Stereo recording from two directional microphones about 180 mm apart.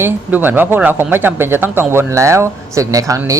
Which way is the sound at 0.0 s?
10° right (ahead or behind).